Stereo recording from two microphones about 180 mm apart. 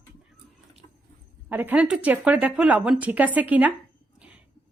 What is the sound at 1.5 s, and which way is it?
A woman's voice, 10° right (ahead or behind).